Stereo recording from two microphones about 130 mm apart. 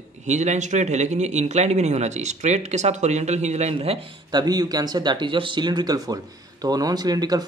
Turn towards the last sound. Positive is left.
turn(degrees=-30)  # may be behind; listen again after turning